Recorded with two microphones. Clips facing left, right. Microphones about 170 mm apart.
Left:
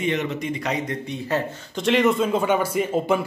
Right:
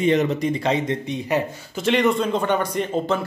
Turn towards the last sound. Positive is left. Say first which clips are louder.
# left 1 dB
turn(degrees=5)  # may be behind; listen again after turning